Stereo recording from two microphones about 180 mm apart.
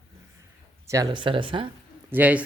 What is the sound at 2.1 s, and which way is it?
Speech, 10° right (ahead or behind).